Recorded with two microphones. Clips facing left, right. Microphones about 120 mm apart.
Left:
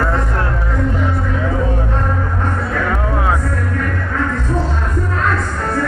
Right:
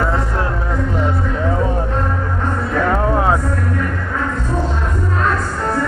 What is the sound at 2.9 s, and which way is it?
Music, 30° right (ahead or behind).